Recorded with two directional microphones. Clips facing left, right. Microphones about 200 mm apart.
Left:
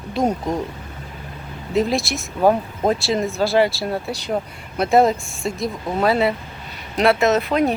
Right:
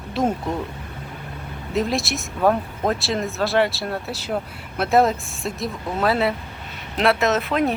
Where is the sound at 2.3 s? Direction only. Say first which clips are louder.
Left 3 dB; 20° left (ahead or behind).